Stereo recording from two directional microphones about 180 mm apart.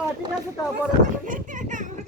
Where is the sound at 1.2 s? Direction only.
45° right (ahead or behind).